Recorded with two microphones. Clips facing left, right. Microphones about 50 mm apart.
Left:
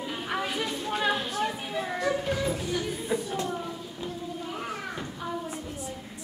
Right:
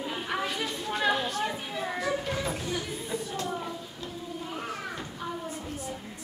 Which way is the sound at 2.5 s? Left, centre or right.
Centre.